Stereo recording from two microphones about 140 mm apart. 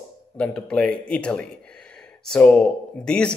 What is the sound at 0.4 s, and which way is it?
Speech, 5° left (ahead or behind).